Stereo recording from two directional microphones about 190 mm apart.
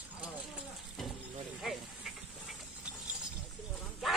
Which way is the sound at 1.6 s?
Centre (ahead or behind).